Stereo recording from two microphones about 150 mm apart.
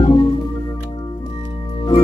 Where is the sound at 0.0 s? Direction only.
35° left (ahead or behind).